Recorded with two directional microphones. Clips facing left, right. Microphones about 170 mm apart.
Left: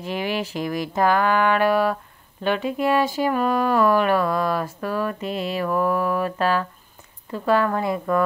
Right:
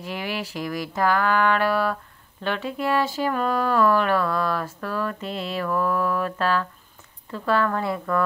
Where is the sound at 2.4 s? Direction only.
15° left (ahead or behind).